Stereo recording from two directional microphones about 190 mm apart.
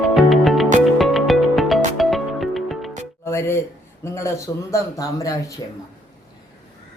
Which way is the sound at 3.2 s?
15° left (ahead or behind).